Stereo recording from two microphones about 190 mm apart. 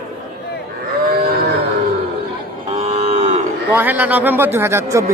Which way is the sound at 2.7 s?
35° right (ahead or behind).